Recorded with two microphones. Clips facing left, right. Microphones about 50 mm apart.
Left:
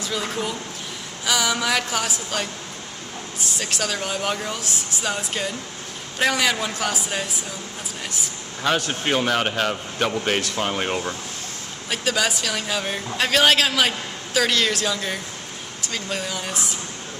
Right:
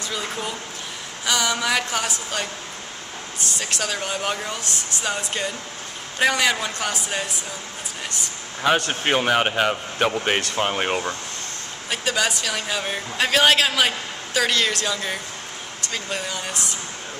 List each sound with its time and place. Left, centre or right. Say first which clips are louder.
0.1 s a man's voice: left 3 dB; centre
3.5 s a man's voice: left 1 dB; centre
4.5 s a man's voice: even; centre
8.8 s speech: right 1 dB; centre
11.9 s a man's voice: even; centre